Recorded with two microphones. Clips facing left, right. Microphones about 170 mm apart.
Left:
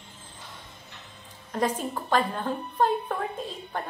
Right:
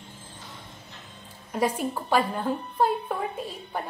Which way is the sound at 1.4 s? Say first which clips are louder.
Right 1 dB; 10° right (ahead or behind).